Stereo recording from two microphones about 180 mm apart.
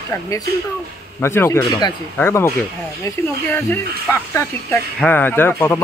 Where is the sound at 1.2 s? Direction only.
15° left (ahead or behind).